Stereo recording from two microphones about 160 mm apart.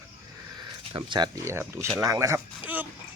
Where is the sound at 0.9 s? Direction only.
30° right (ahead or behind).